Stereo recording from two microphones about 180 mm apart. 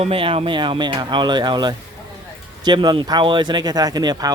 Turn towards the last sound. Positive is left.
turn(degrees=-20)  # may be behind; listen again after turning